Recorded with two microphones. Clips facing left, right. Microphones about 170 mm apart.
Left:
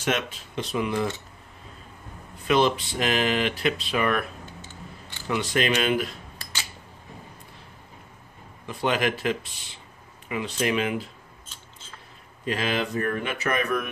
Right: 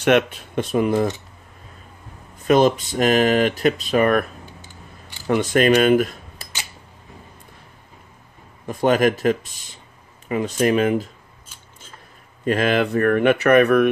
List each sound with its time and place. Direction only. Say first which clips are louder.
0.0 s speech: right 10 dB; 60° right (ahead or behind)
2.3 s speech: right 6 dB; 45° right (ahead or behind)
5.3 s speech: right 8 dB; 50° right (ahead or behind)
8.6 s speech: right 8 dB; 45° right (ahead or behind)
12.4 s speech: right 8 dB; 55° right (ahead or behind)